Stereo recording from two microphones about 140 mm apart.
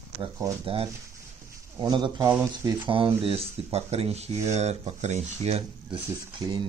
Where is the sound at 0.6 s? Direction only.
40° right (ahead or behind).